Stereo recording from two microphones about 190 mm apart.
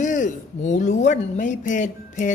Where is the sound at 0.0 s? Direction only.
40° left (ahead or behind).